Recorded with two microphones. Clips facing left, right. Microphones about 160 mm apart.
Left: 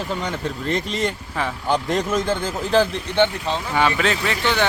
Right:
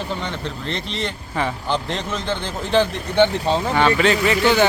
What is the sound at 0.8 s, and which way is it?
Speech, 45° left (ahead or behind).